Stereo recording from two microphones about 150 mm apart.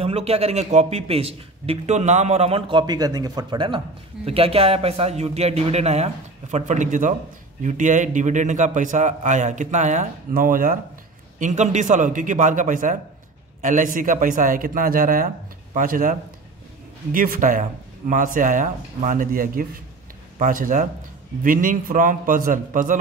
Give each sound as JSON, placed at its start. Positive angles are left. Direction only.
{"t": 0.0, "sound": "a man's voice", "side_deg": -45}
{"t": 2.7, "sound": "a man's voice", "side_deg": -30}
{"t": 11.3, "sound": "a man's voice", "side_deg": -55}